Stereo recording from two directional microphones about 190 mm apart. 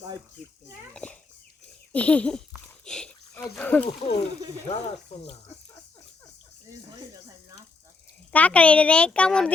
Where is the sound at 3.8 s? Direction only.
30° left (ahead or behind).